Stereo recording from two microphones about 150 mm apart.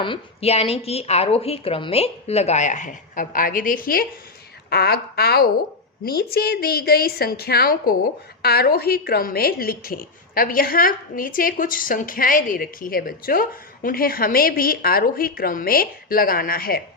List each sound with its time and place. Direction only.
0.0 s a woman's voice: 40° left (ahead or behind); by 4.0 s 70° left (ahead or behind)
4.7 s a woman's voice: 90° left